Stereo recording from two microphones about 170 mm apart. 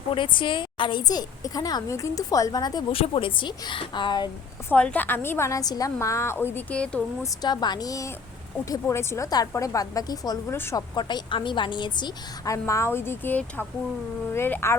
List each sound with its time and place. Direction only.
0.1 s a woman's voice: 30° left (ahead or behind)
4.7 s a woman's voice: 10° left (ahead or behind)
7.4 s a woman's voice: 25° left (ahead or behind)